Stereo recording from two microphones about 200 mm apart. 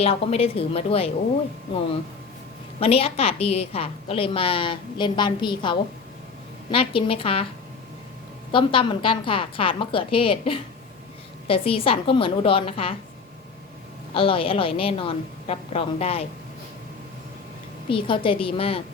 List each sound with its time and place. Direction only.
0.0 s a woman's voice: 30° left (ahead or behind)
2.8 s a woman's voice: 30° left (ahead or behind)
8.5 s a woman's voice: 25° left (ahead or behind)
14.1 s a woman's voice: 25° left (ahead or behind)
17.8 s a woman's voice: 25° left (ahead or behind)